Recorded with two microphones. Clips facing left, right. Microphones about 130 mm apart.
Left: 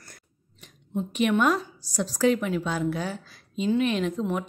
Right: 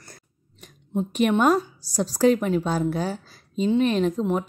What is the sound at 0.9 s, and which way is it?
A woman's voice, 40° right (ahead or behind).